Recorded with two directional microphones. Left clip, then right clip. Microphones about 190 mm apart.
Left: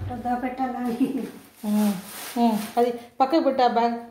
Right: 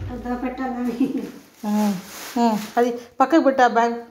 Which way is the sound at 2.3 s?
20° right (ahead or behind).